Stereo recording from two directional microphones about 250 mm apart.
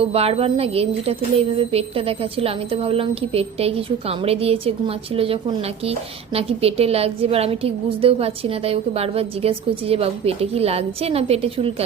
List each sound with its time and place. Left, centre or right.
0.0 s a woman's voice: right